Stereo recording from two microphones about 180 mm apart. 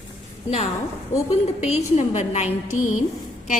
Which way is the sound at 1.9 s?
40° left (ahead or behind).